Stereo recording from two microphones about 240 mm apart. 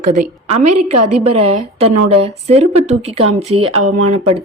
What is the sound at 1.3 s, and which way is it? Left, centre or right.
A woman's voice, right.